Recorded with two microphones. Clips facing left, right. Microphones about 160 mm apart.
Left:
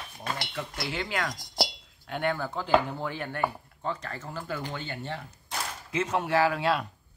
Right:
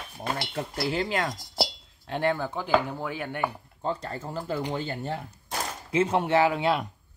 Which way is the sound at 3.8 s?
30° right (ahead or behind).